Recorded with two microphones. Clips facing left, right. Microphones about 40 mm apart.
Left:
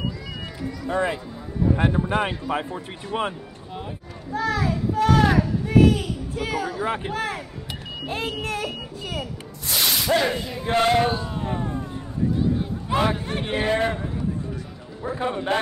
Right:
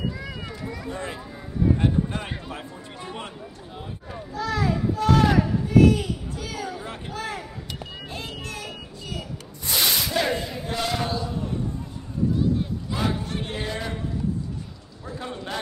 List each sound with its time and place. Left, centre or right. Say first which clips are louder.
0.8 s a man's voice: left 13 dB; left
4.4 s a child's voice: left 2 dB; left
5.7 s a sound: even; left
6.8 s a man's voice: left 7 dB; left
9.7 s a sound: left 1 dB; centre
10.2 s a sound: left 1 dB; centre
10.6 s speech: left 8 dB; left
12.9 s a man's voice: left 6 dB; left
15.0 s a man's voice: left 8 dB; left